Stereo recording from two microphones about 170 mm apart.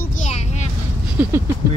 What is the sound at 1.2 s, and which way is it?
Speech, 10° right (ahead or behind).